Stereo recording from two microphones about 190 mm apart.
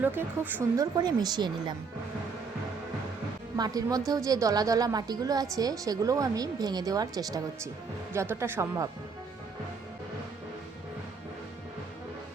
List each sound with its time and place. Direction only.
0.0 s speech: 10° right (ahead or behind)
0.9 s a woman's voice: 20° right (ahead or behind)
3.6 s a woman's voice: 20° right (ahead or behind)